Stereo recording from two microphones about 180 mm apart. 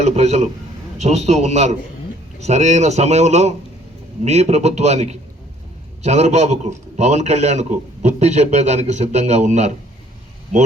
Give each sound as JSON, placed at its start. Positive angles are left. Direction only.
{"t": 0.0, "sound": "a man's voice", "side_deg": -40}